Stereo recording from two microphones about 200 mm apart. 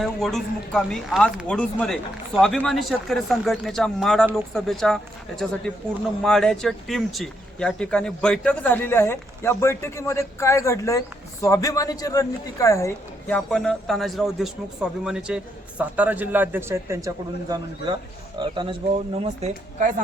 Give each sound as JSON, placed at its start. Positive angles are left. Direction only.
{"t": 0.0, "sound": "speech", "side_deg": 0}
{"t": 6.2, "sound": "a man's voice", "side_deg": 0}